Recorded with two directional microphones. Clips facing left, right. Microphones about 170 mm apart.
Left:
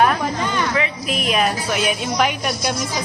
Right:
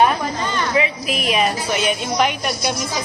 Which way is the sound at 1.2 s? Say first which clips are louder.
Even; centre (ahead or behind).